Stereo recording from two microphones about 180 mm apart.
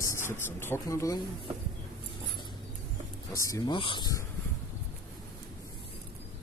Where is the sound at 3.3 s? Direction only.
20° left (ahead or behind).